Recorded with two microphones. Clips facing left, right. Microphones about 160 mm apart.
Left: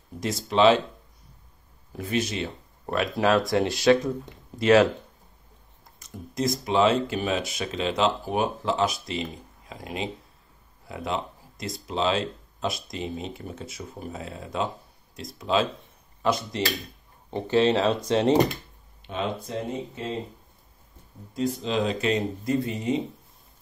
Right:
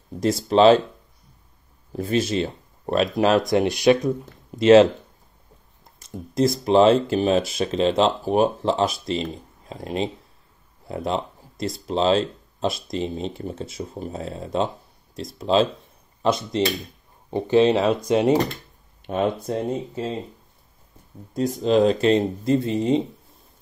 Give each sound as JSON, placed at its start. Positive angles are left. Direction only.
{"t": 0.2, "sound": "speech", "side_deg": -35}
{"t": 1.9, "sound": "speech", "side_deg": -30}
{"t": 5.9, "sound": "speech", "side_deg": -30}
{"t": 19.0, "sound": "speech", "side_deg": -50}
{"t": 21.3, "sound": "speech", "side_deg": -45}
{"t": 21.9, "sound": "speech", "side_deg": -30}